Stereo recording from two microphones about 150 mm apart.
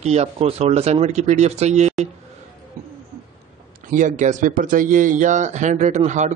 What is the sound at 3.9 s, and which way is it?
A man's voice, 60° right (ahead or behind).